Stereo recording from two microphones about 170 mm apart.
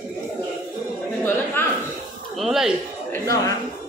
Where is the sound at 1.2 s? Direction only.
10° left (ahead or behind).